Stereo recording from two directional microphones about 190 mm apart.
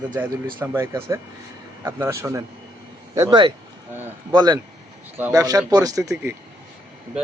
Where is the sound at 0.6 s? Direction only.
15° right (ahead or behind).